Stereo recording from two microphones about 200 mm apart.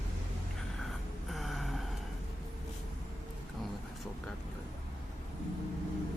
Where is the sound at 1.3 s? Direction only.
Centre (ahead or behind).